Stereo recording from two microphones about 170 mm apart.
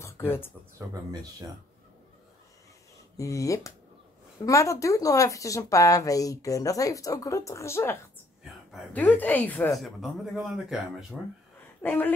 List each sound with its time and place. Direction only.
0.0 s a sound: 15° left (ahead or behind)
3.2 s speech: 20° left (ahead or behind); by 11.1 s centre (ahead or behind)
11.8 s speech: 10° left (ahead or behind)